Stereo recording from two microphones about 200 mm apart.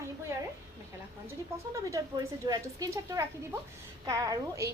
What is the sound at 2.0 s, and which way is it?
A woman's voice, 15° right (ahead or behind).